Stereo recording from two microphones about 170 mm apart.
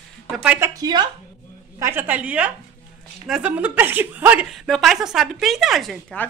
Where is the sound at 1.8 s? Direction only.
10° right (ahead or behind).